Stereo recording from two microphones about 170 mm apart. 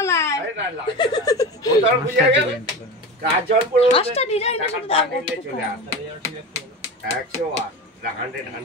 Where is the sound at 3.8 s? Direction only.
35° left (ahead or behind).